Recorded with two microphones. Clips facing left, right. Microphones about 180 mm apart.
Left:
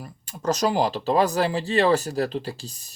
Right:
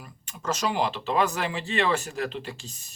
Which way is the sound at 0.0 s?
40° left (ahead or behind).